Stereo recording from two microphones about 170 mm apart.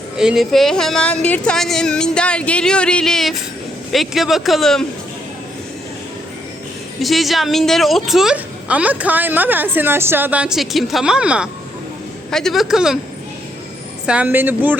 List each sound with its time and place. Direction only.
0.2 s a woman's voice: centre (ahead or behind)
7.0 s a woman's voice: centre (ahead or behind)
14.1 s speech: 10° right (ahead or behind)